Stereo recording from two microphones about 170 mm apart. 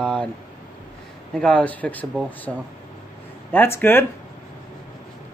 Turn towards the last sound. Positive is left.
turn(degrees=15)  # may be behind; listen again after turning